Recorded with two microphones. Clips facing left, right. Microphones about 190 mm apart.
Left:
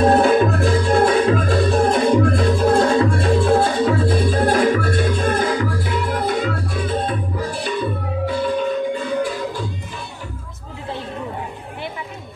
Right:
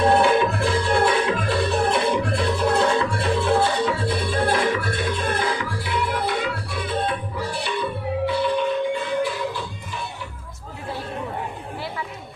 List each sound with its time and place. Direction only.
0.0 s music: 45° left (ahead or behind)